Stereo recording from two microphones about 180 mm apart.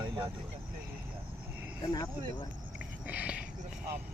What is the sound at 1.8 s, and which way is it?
Speech, 20° left (ahead or behind).